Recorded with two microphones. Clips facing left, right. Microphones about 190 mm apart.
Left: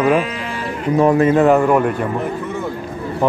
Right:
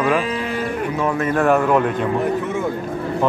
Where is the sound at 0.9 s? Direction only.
35° left (ahead or behind).